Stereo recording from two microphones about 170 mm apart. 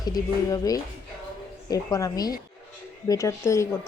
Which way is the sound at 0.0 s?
20° left (ahead or behind).